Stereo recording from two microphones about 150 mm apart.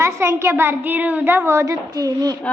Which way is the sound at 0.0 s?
15° right (ahead or behind).